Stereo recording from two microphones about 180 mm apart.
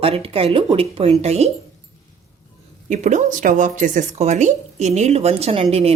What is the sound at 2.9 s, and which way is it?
Speech, 40° right (ahead or behind).